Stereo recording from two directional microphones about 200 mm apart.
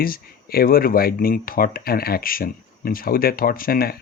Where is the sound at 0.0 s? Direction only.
45° left (ahead or behind).